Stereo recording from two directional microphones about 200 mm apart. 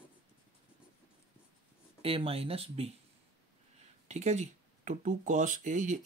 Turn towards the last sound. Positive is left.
turn(degrees=-40)  # may be behind; listen again after turning